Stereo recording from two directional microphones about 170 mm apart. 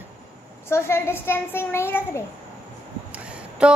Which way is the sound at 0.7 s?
15° left (ahead or behind).